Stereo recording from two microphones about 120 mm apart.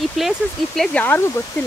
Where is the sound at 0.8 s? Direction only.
10° left (ahead or behind).